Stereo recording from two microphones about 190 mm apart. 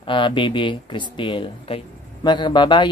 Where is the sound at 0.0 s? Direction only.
25° left (ahead or behind).